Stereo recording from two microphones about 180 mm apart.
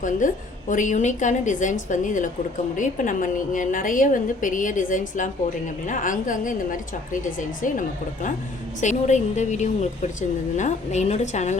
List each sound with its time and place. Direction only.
0.2 s a woman's voice: 45° left (ahead or behind)